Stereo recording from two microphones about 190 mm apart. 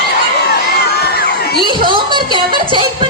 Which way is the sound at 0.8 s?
55° left (ahead or behind).